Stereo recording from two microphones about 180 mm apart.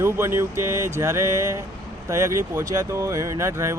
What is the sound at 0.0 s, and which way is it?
Speech, 15° right (ahead or behind).